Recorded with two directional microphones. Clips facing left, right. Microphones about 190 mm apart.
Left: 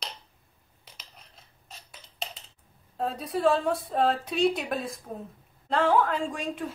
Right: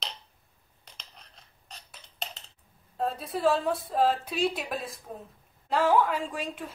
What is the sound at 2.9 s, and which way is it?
A woman's voice, centre (ahead or behind).